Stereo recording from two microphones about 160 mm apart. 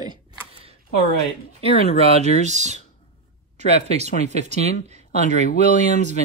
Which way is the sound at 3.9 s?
45° right (ahead or behind).